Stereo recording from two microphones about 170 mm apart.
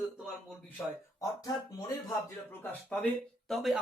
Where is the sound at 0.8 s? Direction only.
15° left (ahead or behind).